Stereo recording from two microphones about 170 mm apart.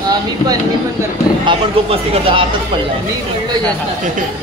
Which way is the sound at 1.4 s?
35° right (ahead or behind).